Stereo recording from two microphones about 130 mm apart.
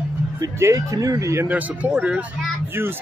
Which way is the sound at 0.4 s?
25° right (ahead or behind).